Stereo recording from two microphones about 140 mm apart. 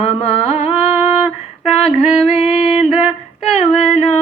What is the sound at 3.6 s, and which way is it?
Female singing, 50° left (ahead or behind).